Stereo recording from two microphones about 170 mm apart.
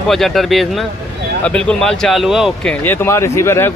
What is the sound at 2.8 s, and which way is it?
Speech, 15° left (ahead or behind).